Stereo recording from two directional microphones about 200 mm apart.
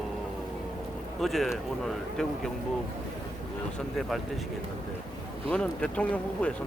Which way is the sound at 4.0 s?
Centre (ahead or behind).